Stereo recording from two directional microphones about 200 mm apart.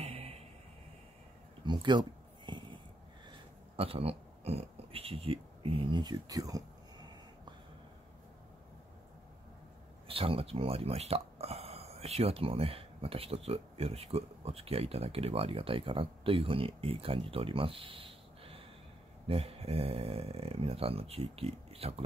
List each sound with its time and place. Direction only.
0.0 s music: 30° right (ahead or behind)
1.7 s a sound: 20° right (ahead or behind)
3.3 s speech: 30° right (ahead or behind)
10.0 s speech: 25° right (ahead or behind)